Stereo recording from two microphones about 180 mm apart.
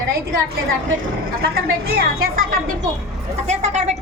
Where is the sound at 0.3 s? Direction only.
60° right (ahead or behind).